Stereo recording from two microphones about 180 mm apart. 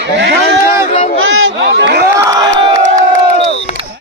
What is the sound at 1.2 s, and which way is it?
Speech, 90° right.